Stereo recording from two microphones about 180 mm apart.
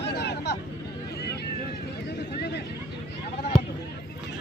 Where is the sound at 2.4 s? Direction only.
70° left (ahead or behind).